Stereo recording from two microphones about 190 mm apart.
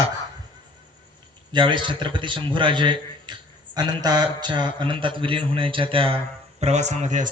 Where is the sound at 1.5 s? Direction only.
25° right (ahead or behind).